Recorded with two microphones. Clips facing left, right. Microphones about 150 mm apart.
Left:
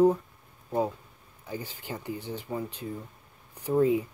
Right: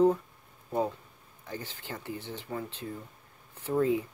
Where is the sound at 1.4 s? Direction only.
10° left (ahead or behind).